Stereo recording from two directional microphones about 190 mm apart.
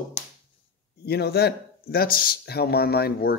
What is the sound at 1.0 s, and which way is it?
Speech, 60° left (ahead or behind).